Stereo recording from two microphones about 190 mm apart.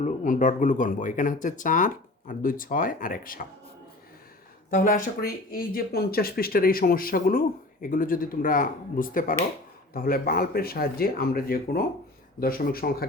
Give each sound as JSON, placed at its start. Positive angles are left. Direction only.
{"t": 0.0, "sound": "speech", "side_deg": 40}
{"t": 4.7, "sound": "speech", "side_deg": 45}